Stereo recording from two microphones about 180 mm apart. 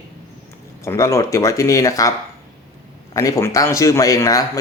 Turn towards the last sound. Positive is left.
turn(degrees=20)  # may be behind; listen again after turning